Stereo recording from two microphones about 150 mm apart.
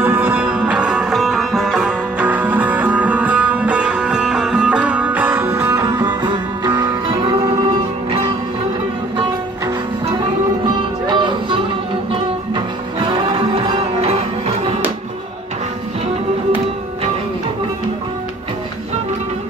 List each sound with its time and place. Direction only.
0.0 s music: 15° right (ahead or behind)
10.0 s music: 30° right (ahead or behind)